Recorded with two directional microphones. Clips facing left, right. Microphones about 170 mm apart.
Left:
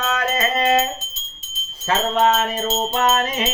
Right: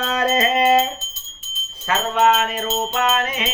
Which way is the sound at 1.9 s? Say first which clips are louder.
Even; 35° left (ahead or behind).